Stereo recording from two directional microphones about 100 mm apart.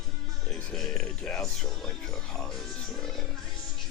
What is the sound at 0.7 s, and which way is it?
Music, 5° left (ahead or behind).